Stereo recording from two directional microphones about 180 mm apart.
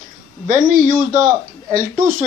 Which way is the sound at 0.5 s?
45° right (ahead or behind).